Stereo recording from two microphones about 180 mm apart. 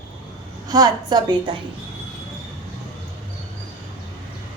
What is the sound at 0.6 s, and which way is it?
Speech, 20° right (ahead or behind).